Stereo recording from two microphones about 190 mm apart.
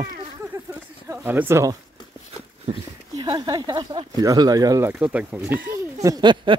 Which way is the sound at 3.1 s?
20° right (ahead or behind).